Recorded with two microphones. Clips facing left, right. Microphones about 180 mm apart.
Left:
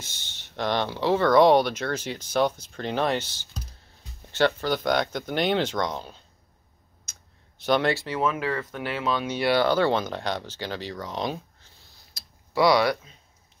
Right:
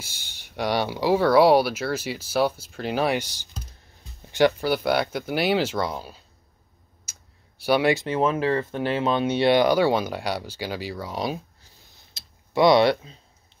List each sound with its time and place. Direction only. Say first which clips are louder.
0.0 s speech: right 1 dB; 10° right (ahead or behind)
7.1 s computer keyboard: even; 10° right (ahead or behind)
8.0 s speech: right 4 dB; 25° right (ahead or behind); by 11.4 s 10° right (ahead or behind)
12.1 s typing: right 4 dB; 25° right (ahead or behind)